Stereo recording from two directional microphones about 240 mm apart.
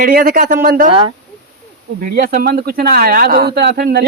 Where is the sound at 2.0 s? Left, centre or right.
Right.